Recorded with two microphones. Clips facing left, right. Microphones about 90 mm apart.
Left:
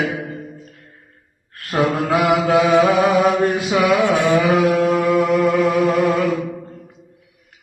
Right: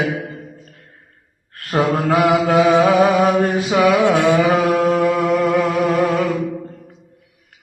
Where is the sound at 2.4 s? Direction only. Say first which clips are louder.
Even; 40° right (ahead or behind).